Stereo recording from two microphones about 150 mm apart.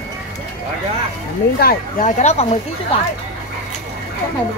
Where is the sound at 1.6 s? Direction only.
55° left (ahead or behind).